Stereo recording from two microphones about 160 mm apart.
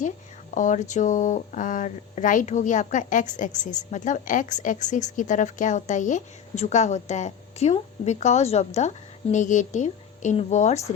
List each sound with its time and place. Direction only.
0.5 s speech: 50° left (ahead or behind)